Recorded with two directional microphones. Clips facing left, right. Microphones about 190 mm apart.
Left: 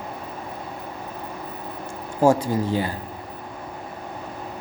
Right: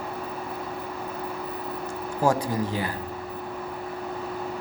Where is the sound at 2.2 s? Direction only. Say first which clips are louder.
Left 5 dB; 25° left (ahead or behind).